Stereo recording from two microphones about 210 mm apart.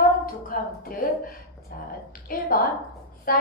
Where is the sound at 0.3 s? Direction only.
45° left (ahead or behind).